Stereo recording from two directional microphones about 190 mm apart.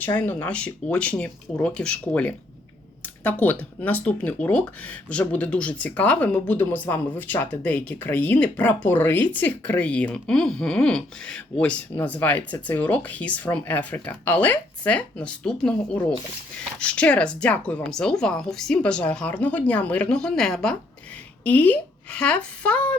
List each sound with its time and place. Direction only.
0.0 s speech: 10° left (ahead or behind)